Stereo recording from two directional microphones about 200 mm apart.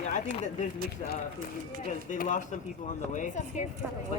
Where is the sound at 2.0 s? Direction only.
40° left (ahead or behind).